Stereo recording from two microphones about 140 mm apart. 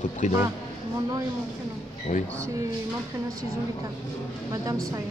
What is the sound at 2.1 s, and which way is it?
Speech, 55° left (ahead or behind).